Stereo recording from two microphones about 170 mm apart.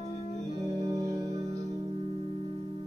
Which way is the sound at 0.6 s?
20° right (ahead or behind).